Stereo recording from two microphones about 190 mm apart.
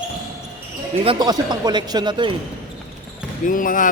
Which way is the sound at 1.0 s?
20° right (ahead or behind).